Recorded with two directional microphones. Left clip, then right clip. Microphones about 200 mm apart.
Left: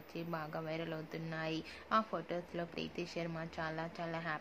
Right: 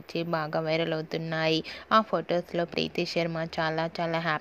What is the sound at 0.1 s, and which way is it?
A woman's voice, 35° right (ahead or behind).